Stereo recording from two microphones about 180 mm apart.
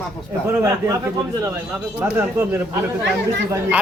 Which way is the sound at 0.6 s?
15° right (ahead or behind).